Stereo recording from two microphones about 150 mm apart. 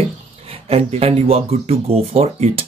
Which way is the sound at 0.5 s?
40° right (ahead or behind).